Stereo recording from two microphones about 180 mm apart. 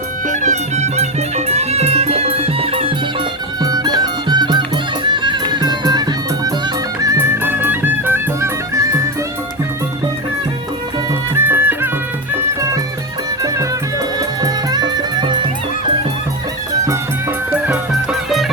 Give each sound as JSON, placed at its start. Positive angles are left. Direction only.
{"t": 0.3, "sound": "music", "side_deg": -40}
{"t": 3.6, "sound": "music", "side_deg": -20}
{"t": 11.3, "sound": "music", "side_deg": -10}
{"t": 17.5, "sound": "music", "side_deg": -5}